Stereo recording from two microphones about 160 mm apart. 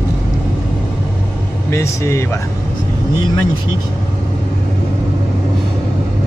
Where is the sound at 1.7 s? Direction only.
15° left (ahead or behind).